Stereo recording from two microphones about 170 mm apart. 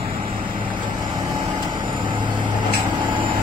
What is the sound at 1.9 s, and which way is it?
Vehicle, 25° right (ahead or behind).